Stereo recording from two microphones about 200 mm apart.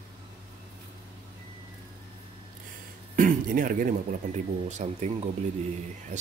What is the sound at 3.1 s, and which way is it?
Speech, 45° right (ahead or behind).